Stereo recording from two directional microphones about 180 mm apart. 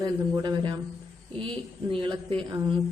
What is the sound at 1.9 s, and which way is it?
Speech, 30° right (ahead or behind).